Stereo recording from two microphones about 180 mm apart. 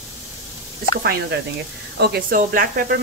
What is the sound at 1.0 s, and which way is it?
Speech, 65° right (ahead or behind).